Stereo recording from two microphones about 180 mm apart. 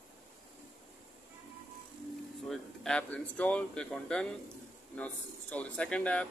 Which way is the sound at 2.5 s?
5° left (ahead or behind).